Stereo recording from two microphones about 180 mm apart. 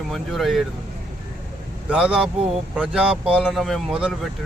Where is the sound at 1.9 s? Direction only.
5° right (ahead or behind).